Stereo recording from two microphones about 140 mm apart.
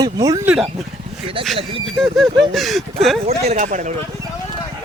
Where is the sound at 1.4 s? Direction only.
40° right (ahead or behind).